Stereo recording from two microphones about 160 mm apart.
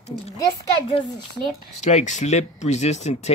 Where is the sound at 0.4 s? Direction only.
30° left (ahead or behind).